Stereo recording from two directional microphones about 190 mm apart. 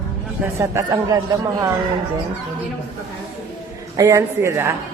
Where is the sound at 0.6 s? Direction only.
15° right (ahead or behind).